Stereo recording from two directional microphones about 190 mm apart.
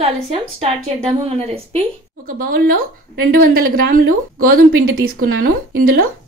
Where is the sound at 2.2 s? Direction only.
45° right (ahead or behind).